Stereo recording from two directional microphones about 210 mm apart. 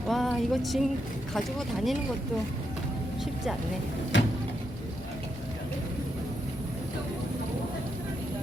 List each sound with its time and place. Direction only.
0.1 s music: centre (ahead or behind)
1.3 s speech: centre (ahead or behind)
4.1 s a sound: 60° left (ahead or behind)